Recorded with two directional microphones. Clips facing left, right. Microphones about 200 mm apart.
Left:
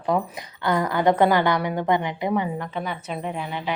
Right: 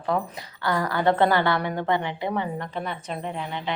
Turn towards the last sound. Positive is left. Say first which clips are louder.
# left 2 dB
turn(degrees=5)  # may be behind; listen again after turning